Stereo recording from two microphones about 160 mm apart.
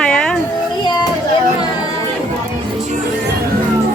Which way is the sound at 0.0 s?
5° left (ahead or behind).